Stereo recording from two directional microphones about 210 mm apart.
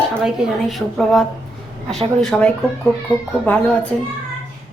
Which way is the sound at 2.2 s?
5° left (ahead or behind).